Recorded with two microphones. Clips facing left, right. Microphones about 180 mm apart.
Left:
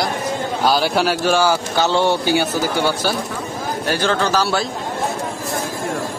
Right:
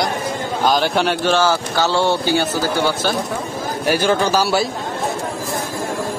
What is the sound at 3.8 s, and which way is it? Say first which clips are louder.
Speech: right 3 dB; 10° right (ahead or behind).